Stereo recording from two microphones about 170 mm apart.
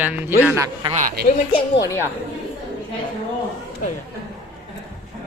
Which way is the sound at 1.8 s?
15° left (ahead or behind).